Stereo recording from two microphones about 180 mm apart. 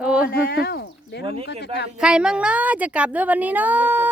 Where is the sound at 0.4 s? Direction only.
60° left (ahead or behind).